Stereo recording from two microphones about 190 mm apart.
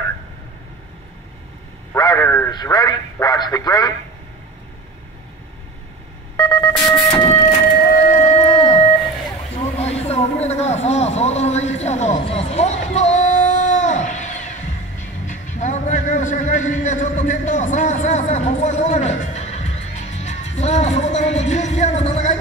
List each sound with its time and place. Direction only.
2.0 s a man's voice: 15° left (ahead or behind)
6.3 s telephone dialing: 20° left (ahead or behind)
8.2 s music: 35° left (ahead or behind)
10.0 s a sound: 35° left (ahead or behind)
15.2 s music: 40° left (ahead or behind)